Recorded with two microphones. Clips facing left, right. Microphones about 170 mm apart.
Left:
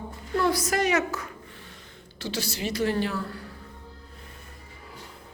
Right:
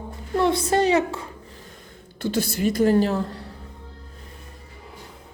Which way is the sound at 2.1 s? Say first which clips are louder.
Right 7 dB; 55° right (ahead or behind).